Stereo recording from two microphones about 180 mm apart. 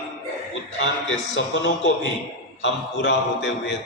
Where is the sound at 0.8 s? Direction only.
85° left.